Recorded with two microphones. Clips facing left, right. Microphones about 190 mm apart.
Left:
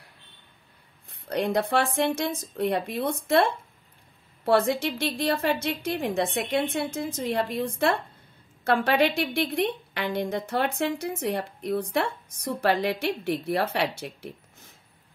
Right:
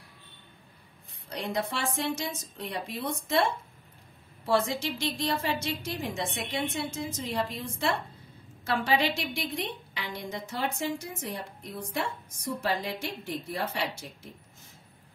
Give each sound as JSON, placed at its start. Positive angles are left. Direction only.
{"t": 1.3, "sound": "a woman's voice", "side_deg": 60}